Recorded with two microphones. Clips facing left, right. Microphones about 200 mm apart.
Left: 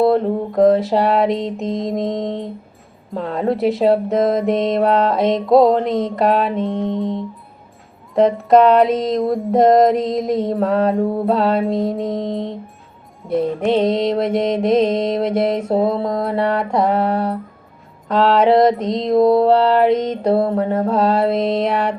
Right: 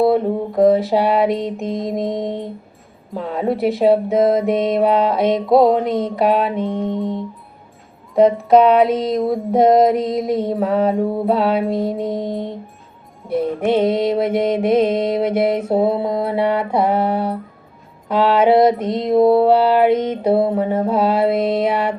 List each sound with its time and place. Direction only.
0.0 s female singing: 5° right (ahead or behind)
18.1 s mantra: 5° right (ahead or behind)
20.6 s female singing: 5° right (ahead or behind)